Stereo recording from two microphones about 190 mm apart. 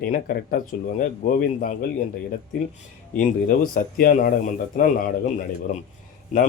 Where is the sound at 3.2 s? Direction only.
50° left (ahead or behind).